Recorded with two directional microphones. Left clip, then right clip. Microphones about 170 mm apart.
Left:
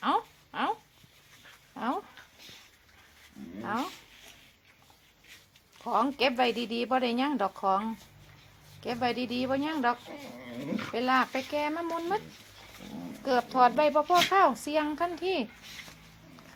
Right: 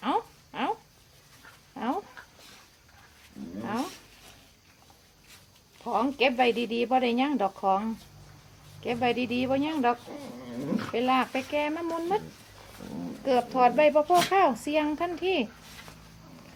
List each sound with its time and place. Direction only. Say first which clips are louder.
0.0 s a sound: even; 15° left (ahead or behind)
1.7 s dog: right 1 dB; 15° left (ahead or behind)
5.8 s speech: right 1 dB; 20° left (ahead or behind)
13.2 s speech: right 1 dB; 10° left (ahead or behind)